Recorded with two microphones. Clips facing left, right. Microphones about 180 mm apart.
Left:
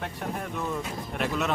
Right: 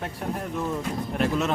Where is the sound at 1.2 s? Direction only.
Centre (ahead or behind).